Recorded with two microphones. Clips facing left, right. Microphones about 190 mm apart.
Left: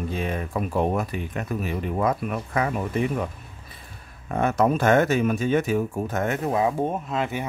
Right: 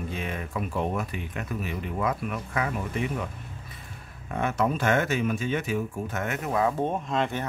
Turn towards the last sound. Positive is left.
turn(degrees=5)  # may be behind; listen again after turning